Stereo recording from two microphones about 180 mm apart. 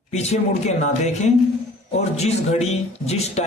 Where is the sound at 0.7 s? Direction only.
40° left (ahead or behind).